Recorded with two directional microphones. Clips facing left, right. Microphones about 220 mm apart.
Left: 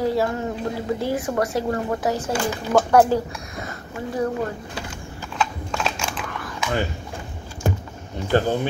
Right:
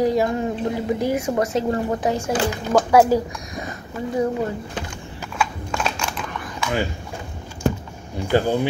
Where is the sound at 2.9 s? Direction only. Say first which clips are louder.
Right 2 dB; 10° right (ahead or behind).